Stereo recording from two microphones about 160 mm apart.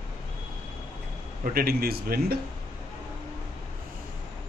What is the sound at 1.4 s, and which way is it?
Speech, 65° right (ahead or behind).